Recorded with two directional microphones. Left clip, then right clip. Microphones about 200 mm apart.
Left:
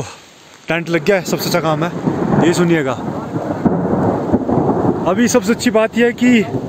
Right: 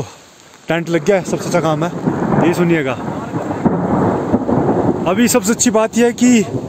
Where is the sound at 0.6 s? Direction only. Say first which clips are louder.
Even; 10° right (ahead or behind).